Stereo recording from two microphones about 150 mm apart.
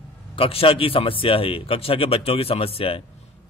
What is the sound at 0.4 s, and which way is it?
Speech, 40° left (ahead or behind).